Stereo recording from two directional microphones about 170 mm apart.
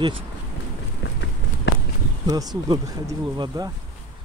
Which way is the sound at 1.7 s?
90° left.